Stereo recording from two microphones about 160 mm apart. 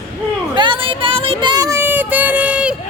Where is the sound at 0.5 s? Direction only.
30° right (ahead or behind); by 2.7 s 10° right (ahead or behind).